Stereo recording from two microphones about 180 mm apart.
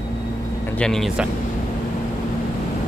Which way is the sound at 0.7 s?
5° left (ahead or behind).